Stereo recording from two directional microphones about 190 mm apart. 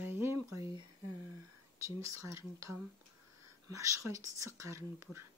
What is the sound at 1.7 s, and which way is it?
Speech, 15° right (ahead or behind).